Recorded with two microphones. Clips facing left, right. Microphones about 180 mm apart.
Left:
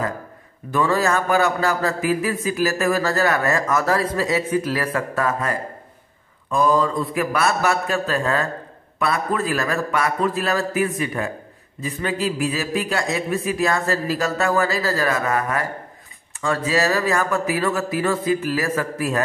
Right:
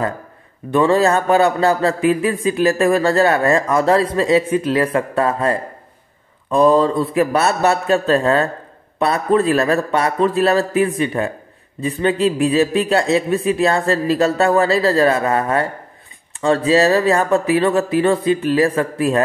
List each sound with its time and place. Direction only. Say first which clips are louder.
0.7 s a man's voice: right 6 dB; 30° right (ahead or behind)